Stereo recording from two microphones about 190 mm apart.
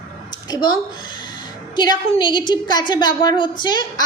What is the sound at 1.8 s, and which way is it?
A woman's voice, 25° left (ahead or behind).